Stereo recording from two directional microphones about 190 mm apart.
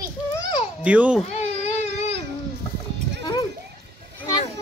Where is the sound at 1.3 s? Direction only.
35° left (ahead or behind).